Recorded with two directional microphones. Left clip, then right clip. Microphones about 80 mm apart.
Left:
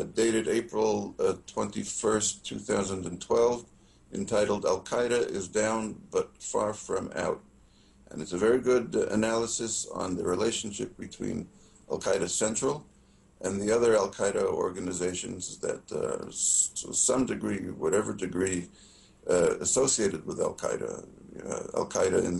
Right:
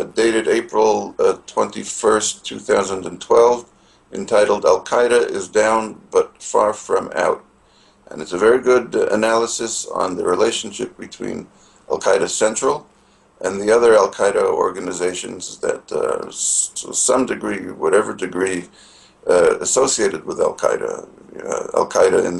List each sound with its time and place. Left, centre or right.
0.0 s speech: left